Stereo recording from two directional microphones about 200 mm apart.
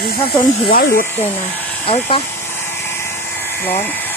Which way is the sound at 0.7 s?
45° left (ahead or behind).